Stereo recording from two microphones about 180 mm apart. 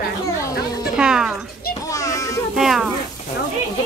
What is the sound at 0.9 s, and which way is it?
Speech, 5° right (ahead or behind).